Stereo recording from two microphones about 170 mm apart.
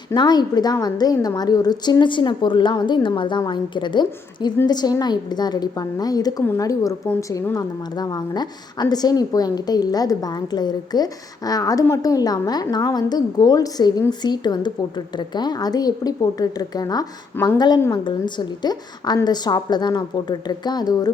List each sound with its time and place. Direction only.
0.1 s a woman's voice: 25° left (ahead or behind)